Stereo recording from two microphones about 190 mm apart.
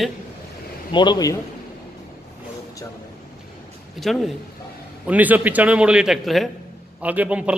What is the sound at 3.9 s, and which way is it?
A man's voice, centre (ahead or behind).